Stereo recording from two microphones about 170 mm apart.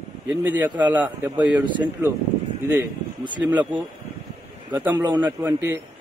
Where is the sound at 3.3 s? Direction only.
10° right (ahead or behind).